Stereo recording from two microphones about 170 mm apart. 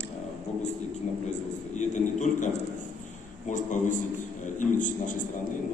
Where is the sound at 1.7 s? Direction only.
45° left (ahead or behind).